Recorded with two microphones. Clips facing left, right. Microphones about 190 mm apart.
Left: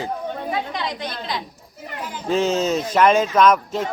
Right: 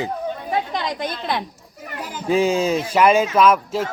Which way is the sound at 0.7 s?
45° right (ahead or behind).